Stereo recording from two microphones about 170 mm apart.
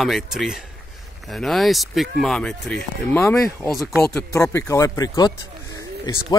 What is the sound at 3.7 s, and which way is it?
Speech, centre (ahead or behind).